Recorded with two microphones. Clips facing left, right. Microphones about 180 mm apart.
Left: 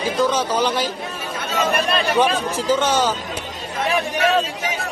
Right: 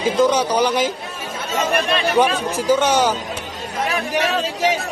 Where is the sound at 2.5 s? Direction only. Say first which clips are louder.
Right 4 dB; 15° right (ahead or behind).